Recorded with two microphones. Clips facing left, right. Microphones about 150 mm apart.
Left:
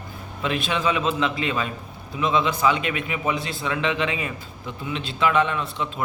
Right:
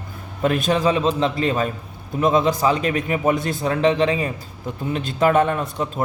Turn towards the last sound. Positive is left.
turn(degrees=-45)  # may be behind; listen again after turning